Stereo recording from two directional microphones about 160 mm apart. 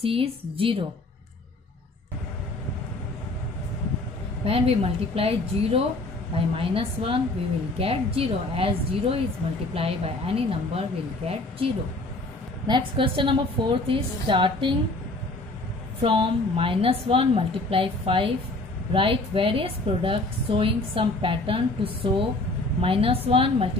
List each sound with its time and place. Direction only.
0.0 s a woman's voice: 35° right (ahead or behind)
4.5 s a woman's voice: 35° right (ahead or behind)
16.0 s a woman's voice: 35° right (ahead or behind)